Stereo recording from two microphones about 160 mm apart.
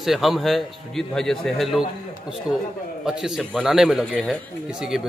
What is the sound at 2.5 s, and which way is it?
Speech, 20° left (ahead or behind).